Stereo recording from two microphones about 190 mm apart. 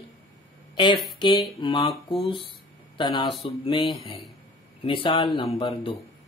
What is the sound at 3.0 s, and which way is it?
Speech, 25° left (ahead or behind).